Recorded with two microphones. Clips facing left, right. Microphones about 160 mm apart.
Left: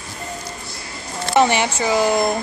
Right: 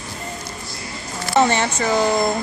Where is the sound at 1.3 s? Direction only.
15° left (ahead or behind).